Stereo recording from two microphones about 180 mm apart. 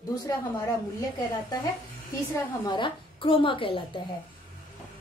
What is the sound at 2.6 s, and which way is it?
Speech, 25° left (ahead or behind).